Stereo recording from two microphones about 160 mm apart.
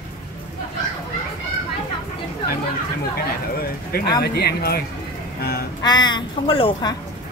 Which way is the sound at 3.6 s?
70° left (ahead or behind).